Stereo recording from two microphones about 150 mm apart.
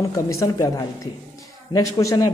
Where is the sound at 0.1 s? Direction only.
20° left (ahead or behind).